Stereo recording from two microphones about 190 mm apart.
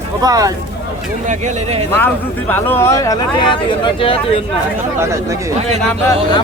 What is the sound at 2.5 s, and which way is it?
Speech, 10° left (ahead or behind).